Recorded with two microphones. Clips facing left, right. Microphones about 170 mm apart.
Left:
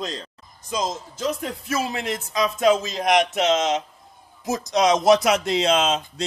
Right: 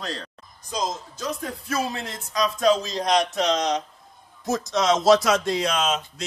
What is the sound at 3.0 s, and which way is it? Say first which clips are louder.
A man's voice: left 2 dB; 20° left (ahead or behind).